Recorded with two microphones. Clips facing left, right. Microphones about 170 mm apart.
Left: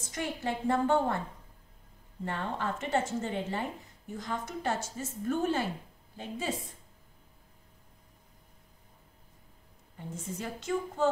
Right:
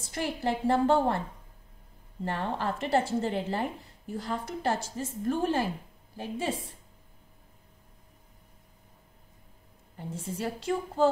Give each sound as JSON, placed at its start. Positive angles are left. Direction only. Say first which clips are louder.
{"t": 0.0, "sound": "speech", "louder": "right 4 dB", "side_deg": -30}
{"t": 2.2, "sound": "speech", "louder": "right 3 dB", "side_deg": -30}
{"t": 10.1, "sound": "speech", "louder": "right 5 dB", "side_deg": -30}